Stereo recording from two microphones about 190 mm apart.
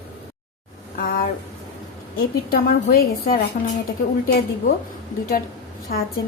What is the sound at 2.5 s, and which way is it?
Speech, 50° left (ahead or behind).